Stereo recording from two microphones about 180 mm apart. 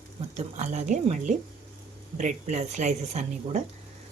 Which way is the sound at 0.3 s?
40° right (ahead or behind).